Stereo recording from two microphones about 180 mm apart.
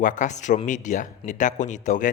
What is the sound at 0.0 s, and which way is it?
A man's voice, 45° left (ahead or behind).